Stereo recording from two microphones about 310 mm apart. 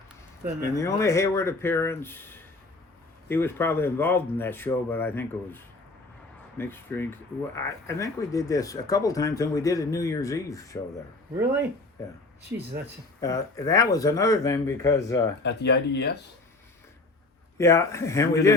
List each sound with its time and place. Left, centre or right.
0.7 s speech: centre
13.1 s speech: centre
15.4 s speech: left
17.6 s speech: centre